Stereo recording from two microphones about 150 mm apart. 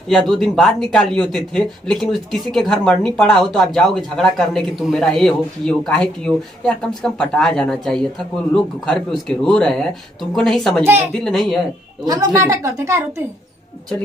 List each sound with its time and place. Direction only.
0.3 s speech: centre (ahead or behind)
12.0 s a woman's voice: 25° right (ahead or behind)